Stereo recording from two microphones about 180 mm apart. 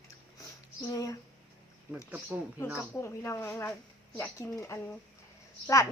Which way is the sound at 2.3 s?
15° right (ahead or behind).